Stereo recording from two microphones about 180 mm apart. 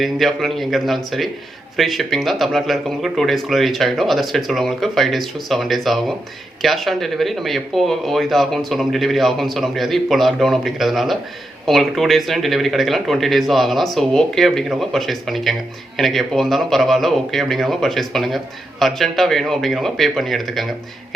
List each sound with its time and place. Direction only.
0.0 s speech: centre (ahead or behind)